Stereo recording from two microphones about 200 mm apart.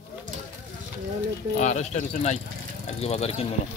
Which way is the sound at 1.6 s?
35° left (ahead or behind).